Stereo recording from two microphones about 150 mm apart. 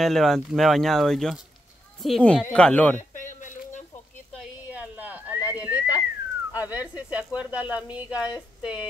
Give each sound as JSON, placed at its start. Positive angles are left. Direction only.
{"t": 0.0, "sound": "speech", "side_deg": 0}
{"t": 3.0, "sound": "a sound", "side_deg": 55}
{"t": 4.6, "sound": "whistling", "side_deg": -10}
{"t": 6.5, "sound": "speech", "side_deg": -10}